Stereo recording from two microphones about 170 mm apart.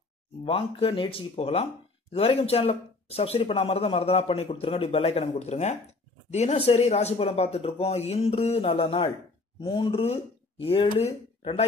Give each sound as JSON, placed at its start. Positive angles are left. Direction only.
{"t": 0.4, "sound": "speech", "side_deg": 35}